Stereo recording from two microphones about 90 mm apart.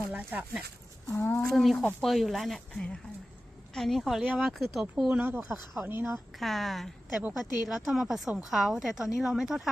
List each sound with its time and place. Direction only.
0.1 s speech: 20° right (ahead or behind)
1.0 s speech: 25° left (ahead or behind)
1.4 s a woman's voice: centre (ahead or behind)
2.7 s a woman's voice: 10° left (ahead or behind)
4.2 s speech: 15° right (ahead or behind)
4.5 s a woman's voice: centre (ahead or behind)
5.2 s speech: 20° right (ahead or behind)
5.5 s a woman's voice: centre (ahead or behind)
5.9 s speech: 25° right (ahead or behind)
6.1 s a woman's voice: centre (ahead or behind)